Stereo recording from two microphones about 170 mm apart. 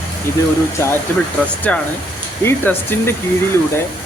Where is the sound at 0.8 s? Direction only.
15° left (ahead or behind).